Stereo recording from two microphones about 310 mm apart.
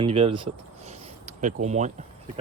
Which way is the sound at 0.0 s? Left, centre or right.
Centre.